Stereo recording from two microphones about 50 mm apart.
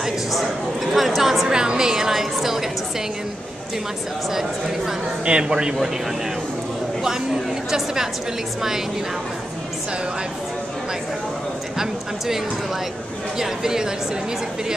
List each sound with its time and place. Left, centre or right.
0.0 s a sound: centre
0.9 s a woman's voice: centre
1.5 s a woman's voice: centre
4.3 s a woman's voice: centre
5.2 s a woman's voice: centre
7.7 s a woman's voice: centre
13.4 s a woman's voice: centre